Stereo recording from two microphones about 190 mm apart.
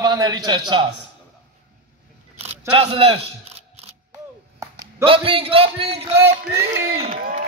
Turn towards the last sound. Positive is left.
turn(degrees=-45)  # may be behind; listen again after turning